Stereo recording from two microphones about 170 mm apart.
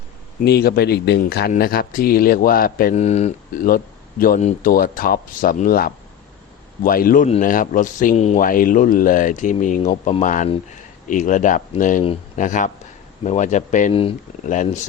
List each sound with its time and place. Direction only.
0.4 s speech: 70° left (ahead or behind)
2.9 s speech: 40° left (ahead or behind)
8.4 s speech: 55° left (ahead or behind)
13.9 s speech: 35° left (ahead or behind)
14.4 s speech: 45° left (ahead or behind)